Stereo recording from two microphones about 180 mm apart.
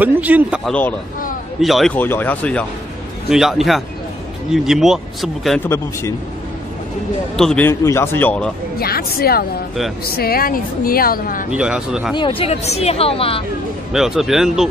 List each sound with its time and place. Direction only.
0.0 s speech: 10° right (ahead or behind)
0.7 s a man's voice: 10° left (ahead or behind)
5.6 s a man's voice: 15° left (ahead or behind)
7.3 s a man's voice: 5° left (ahead or behind)
8.7 s a woman's voice: 60° left (ahead or behind)
11.5 s speech: 5° right (ahead or behind)
12.2 s speech: 30° left (ahead or behind)
13.9 s speech: centre (ahead or behind)